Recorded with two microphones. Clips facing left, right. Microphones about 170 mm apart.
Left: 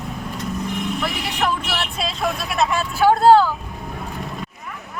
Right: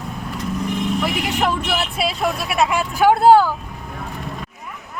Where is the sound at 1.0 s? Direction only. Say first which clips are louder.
Right 3 dB; 20° right (ahead or behind).